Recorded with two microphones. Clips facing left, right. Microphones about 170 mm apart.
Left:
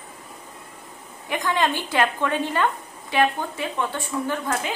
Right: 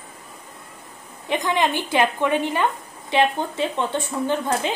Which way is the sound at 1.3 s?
20° right (ahead or behind).